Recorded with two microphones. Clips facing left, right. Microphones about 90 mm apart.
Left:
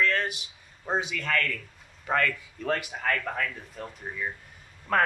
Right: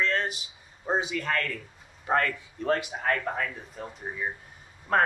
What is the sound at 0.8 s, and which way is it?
Speech, 15° right (ahead or behind).